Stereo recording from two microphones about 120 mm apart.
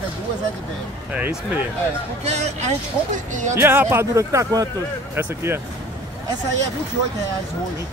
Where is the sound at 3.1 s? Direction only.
90° right.